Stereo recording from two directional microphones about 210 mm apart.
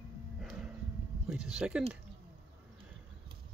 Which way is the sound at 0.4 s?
Centre (ahead or behind).